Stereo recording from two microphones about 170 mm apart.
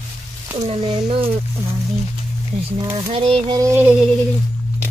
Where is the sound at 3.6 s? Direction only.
15° right (ahead or behind).